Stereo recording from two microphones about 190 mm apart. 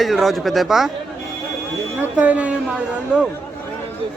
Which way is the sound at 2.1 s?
5° right (ahead or behind).